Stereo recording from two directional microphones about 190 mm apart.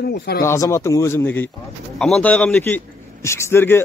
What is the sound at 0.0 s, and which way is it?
Speech, 55° left (ahead or behind).